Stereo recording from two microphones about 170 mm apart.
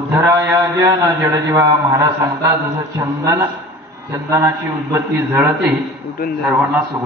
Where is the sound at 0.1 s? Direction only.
15° right (ahead or behind).